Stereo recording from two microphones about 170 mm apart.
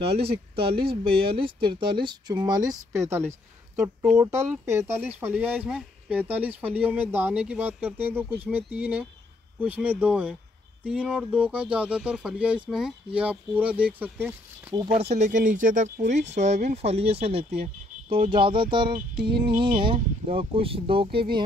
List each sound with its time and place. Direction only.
0.0 s speech: 35° right (ahead or behind); by 10.3 s 5° right (ahead or behind)
10.8 s a sound: 5° right (ahead or behind)
11.7 s speech: 5° right (ahead or behind)
14.7 s speech: 30° right (ahead or behind)
15.1 s speech: 45° right (ahead or behind); by 21.4 s 30° right (ahead or behind)